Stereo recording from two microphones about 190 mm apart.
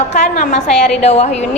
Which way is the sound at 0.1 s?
40° left (ahead or behind).